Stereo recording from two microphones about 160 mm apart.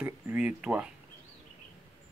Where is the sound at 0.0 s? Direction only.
10° right (ahead or behind).